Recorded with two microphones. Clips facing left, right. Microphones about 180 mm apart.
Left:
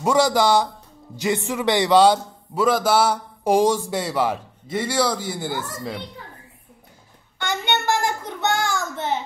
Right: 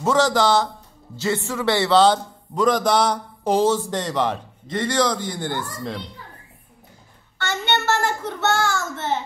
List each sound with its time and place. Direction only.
0.0 s a man's voice: 10° left (ahead or behind)
7.3 s a man's voice: 15° left (ahead or behind)